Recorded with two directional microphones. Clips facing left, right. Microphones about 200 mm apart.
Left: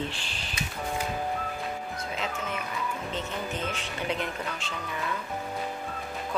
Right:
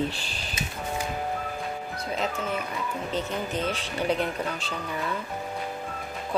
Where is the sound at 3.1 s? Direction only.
35° right (ahead or behind).